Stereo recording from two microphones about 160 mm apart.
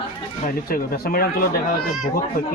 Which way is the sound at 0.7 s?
70° left (ahead or behind).